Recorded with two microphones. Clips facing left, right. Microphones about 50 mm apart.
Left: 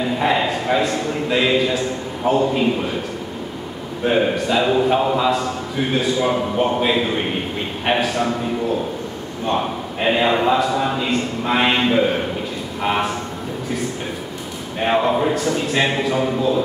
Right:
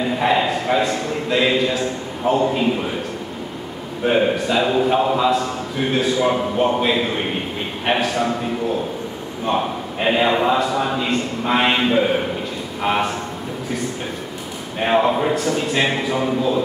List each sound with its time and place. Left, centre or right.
0.2 s a sound: centre
1.3 s a man's voice: centre
4.0 s a man's voice: centre
9.5 s a man's voice: centre
9.9 s a man's voice: centre
14.9 s a man's voice: centre